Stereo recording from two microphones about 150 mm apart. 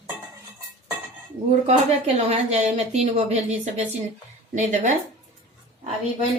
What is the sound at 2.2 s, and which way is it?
A woman's voice, 45° right (ahead or behind).